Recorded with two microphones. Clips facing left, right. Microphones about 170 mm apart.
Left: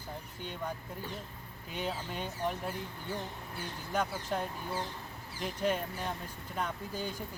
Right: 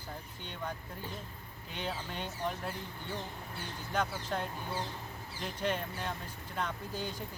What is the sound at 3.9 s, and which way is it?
Speech, 10° left (ahead or behind).